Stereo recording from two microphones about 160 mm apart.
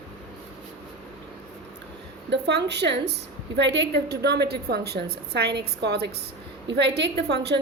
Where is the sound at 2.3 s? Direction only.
90° right.